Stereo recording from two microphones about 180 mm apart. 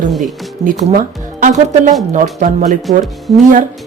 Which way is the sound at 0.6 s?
45° right (ahead or behind).